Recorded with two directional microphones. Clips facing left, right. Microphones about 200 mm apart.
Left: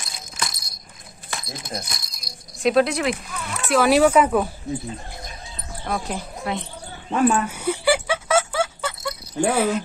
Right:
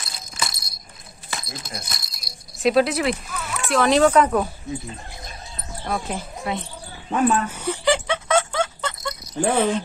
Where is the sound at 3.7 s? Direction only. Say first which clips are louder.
Left 1 dB; 5° left (ahead or behind).